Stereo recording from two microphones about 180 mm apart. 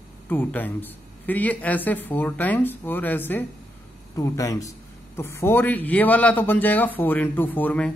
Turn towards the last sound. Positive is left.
turn(degrees=5)  # may be behind; listen again after turning